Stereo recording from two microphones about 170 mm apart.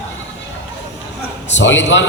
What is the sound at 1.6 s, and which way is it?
Speech, 90° left.